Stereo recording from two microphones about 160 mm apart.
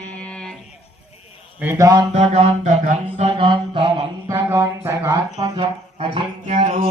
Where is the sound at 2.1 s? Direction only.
40° right (ahead or behind).